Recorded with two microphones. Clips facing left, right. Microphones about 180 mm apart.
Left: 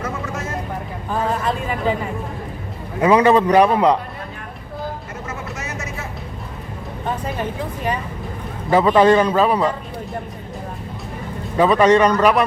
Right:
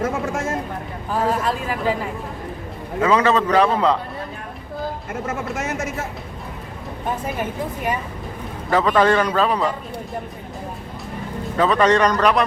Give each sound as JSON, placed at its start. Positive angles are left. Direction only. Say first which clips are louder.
{"t": 0.0, "sound": "vehicle", "louder": "right 4 dB", "side_deg": -50}
{"t": 1.1, "sound": "a sound", "louder": "even", "side_deg": 0}
{"t": 3.0, "sound": "a man's voice", "louder": "left 4 dB", "side_deg": 15}
{"t": 5.2, "sound": "vehicle", "louder": "right 6 dB", "side_deg": -50}
{"t": 8.7, "sound": "a man's voice", "louder": "left 4 dB", "side_deg": 10}
{"t": 11.5, "sound": "a man's voice", "louder": "left 3 dB", "side_deg": 10}